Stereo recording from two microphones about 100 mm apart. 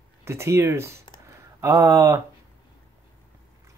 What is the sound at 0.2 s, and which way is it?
Speech, 25° right (ahead or behind).